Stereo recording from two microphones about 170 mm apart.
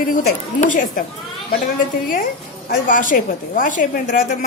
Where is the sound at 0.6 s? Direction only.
50° left (ahead or behind).